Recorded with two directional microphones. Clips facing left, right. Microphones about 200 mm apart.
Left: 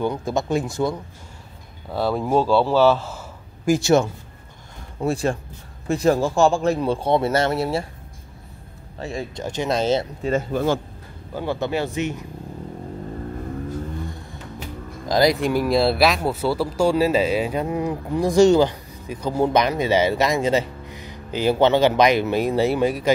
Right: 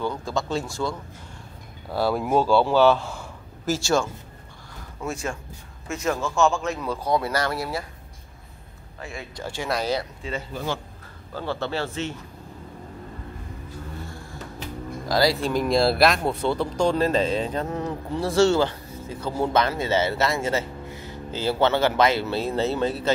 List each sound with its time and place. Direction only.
0.0 s speech: 20° left (ahead or behind)
1.9 s speech: centre (ahead or behind)
3.6 s speech: 20° left (ahead or behind)
5.0 s speech: 35° left (ahead or behind)
9.0 s speech: 30° left (ahead or behind)
9.4 s speech: 20° left (ahead or behind)
10.2 s speech: 50° left (ahead or behind)
11.3 s speech: 15° left (ahead or behind)
14.0 s music: 20° left (ahead or behind)
15.0 s speech: 20° left (ahead or behind)
15.6 s speech: centre (ahead or behind)